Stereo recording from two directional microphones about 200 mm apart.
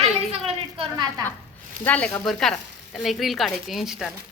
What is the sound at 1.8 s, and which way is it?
Speech, 10° left (ahead or behind).